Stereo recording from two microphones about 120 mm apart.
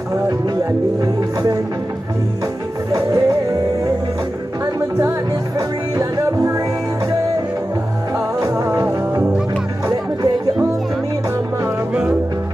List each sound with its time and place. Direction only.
0.1 s speech: 25° right (ahead or behind)
2.9 s music: 30° right (ahead or behind)
5.9 s music: 30° right (ahead or behind)
8.4 s music: 25° right (ahead or behind)
8.8 s music: 15° right (ahead or behind)
10.2 s music: 30° right (ahead or behind)